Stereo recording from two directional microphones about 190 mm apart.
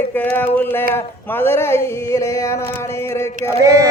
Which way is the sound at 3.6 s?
15° right (ahead or behind).